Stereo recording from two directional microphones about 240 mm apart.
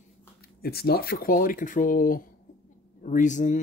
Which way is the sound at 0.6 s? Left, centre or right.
Left.